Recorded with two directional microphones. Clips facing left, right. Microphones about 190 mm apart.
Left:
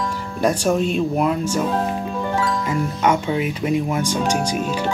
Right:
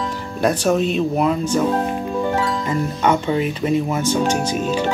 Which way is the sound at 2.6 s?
10° left (ahead or behind).